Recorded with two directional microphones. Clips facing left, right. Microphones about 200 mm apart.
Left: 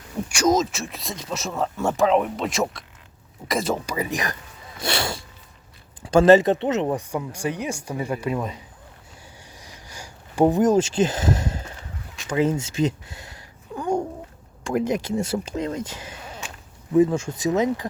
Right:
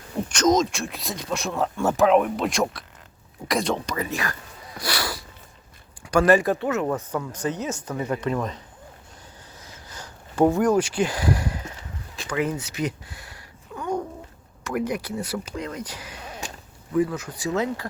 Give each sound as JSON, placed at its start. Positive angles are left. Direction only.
{"t": 0.3, "sound": "speech", "side_deg": 10}
{"t": 9.6, "sound": "a sound", "side_deg": 15}
{"t": 14.6, "sound": "speech", "side_deg": 25}